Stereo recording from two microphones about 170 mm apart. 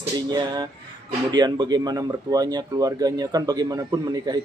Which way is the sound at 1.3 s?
25° right (ahead or behind).